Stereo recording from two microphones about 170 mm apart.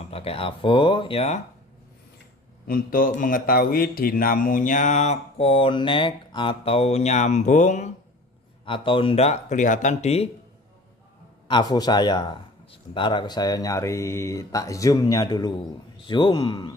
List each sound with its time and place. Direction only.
0.1 s speech: 35° left (ahead or behind)
2.6 s a man's voice: 60° left (ahead or behind)
8.6 s speech: 30° left (ahead or behind)
11.4 s speech: 25° left (ahead or behind)